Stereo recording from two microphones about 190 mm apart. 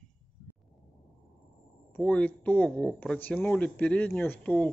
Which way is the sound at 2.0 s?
5° left (ahead or behind).